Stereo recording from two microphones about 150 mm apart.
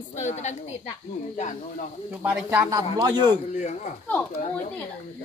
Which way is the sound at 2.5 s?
20° right (ahead or behind).